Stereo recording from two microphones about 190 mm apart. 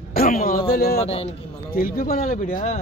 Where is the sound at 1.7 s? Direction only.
50° left (ahead or behind).